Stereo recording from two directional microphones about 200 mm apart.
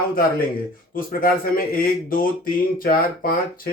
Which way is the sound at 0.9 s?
45° left (ahead or behind).